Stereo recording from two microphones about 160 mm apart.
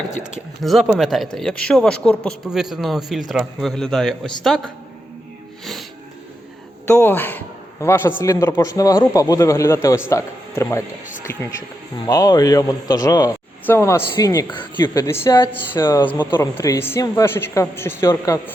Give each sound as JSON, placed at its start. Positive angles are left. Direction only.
{"t": 0.2, "sound": "speech", "side_deg": 0}
{"t": 6.8, "sound": "a man's voice", "side_deg": 15}
{"t": 12.0, "sound": "a man's voice", "side_deg": 20}